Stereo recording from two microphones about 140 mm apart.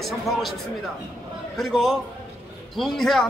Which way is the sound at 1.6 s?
Centre (ahead or behind).